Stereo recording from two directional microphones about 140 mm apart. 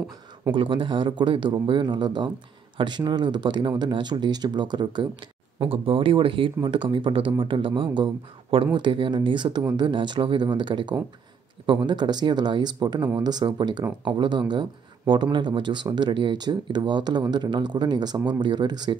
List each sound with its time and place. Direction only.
0.6 s speech: 35° right (ahead or behind)